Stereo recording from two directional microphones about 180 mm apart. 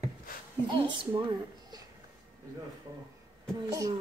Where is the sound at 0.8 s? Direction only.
30° right (ahead or behind).